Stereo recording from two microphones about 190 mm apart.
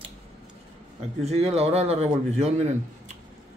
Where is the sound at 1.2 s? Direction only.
35° right (ahead or behind).